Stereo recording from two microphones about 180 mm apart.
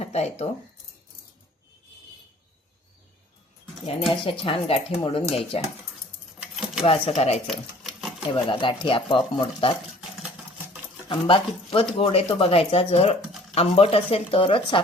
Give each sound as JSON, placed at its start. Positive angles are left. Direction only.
{"t": 0.0, "sound": "speech", "side_deg": 35}
{"t": 4.1, "sound": "speech", "side_deg": 30}
{"t": 6.4, "sound": "a sound", "side_deg": -5}
{"t": 6.8, "sound": "speech", "side_deg": 30}
{"t": 7.4, "sound": "a sound", "side_deg": 0}
{"t": 8.3, "sound": "speech", "side_deg": 30}
{"t": 11.1, "sound": "speech", "side_deg": 30}